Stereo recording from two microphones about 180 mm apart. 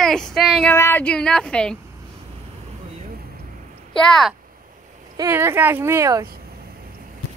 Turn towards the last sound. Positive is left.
turn(degrees=-15)  # may be behind; listen again after turning